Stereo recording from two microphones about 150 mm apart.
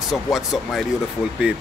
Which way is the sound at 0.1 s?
Centre (ahead or behind).